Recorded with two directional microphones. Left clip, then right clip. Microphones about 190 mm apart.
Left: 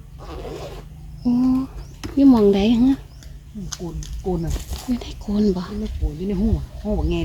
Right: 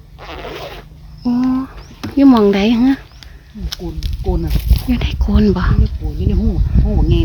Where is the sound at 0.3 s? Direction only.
30° right (ahead or behind).